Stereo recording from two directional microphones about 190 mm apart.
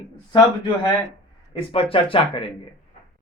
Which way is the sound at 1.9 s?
30° left (ahead or behind).